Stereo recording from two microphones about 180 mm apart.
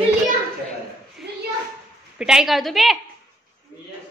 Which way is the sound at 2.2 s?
5° right (ahead or behind).